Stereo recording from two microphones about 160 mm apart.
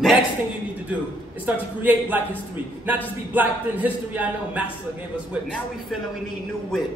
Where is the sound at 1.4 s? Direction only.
10° right (ahead or behind).